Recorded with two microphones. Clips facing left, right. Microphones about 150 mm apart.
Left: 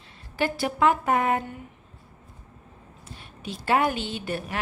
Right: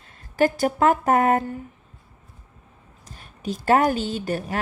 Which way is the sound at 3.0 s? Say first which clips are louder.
Right 7 dB; 40° right (ahead or behind).